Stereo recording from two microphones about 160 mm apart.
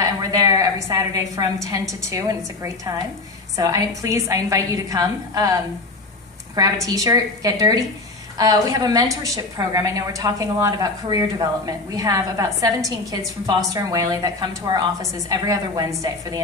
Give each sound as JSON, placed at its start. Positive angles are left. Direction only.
{"t": 0.0, "sound": "a woman's voice", "side_deg": -20}